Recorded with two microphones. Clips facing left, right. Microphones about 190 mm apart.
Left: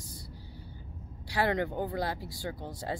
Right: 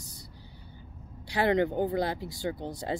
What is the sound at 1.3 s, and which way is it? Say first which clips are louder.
Speech: right 4 dB; 20° right (ahead or behind).